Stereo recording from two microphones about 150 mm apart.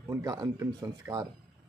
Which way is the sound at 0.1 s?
25° right (ahead or behind).